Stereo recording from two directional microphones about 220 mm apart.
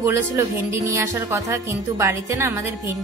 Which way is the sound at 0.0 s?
10° right (ahead or behind).